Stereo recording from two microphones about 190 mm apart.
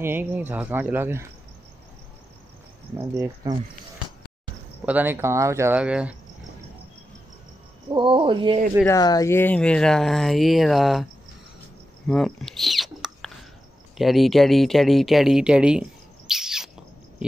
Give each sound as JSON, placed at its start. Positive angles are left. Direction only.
{"t": 0.0, "sound": "speech", "side_deg": -10}
{"t": 3.0, "sound": "speech", "side_deg": -15}
{"t": 4.8, "sound": "speech", "side_deg": -10}
{"t": 7.9, "sound": "speech", "side_deg": -25}
{"t": 8.8, "sound": "speech", "side_deg": 20}
{"t": 12.1, "sound": "a sound", "side_deg": 0}
{"t": 13.9, "sound": "speech", "side_deg": 0}
{"t": 16.3, "sound": "bird", "side_deg": -5}